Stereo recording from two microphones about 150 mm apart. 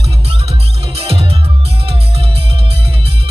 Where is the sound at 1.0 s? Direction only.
40° right (ahead or behind).